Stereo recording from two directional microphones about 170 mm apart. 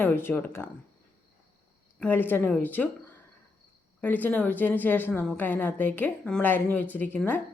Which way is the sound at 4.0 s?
10° left (ahead or behind).